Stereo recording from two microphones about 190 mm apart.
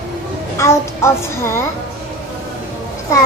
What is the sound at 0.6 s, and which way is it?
A child's voice, 15° left (ahead or behind).